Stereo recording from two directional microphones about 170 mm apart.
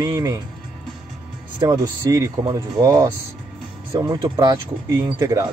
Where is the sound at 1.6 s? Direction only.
20° right (ahead or behind).